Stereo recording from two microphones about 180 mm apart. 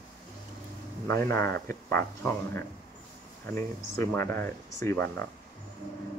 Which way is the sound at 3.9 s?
15° left (ahead or behind).